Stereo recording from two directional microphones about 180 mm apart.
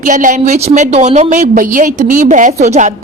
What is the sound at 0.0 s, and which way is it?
A woman's voice, 45° right (ahead or behind).